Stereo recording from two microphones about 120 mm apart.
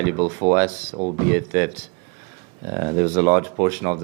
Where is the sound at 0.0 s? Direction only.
20° right (ahead or behind).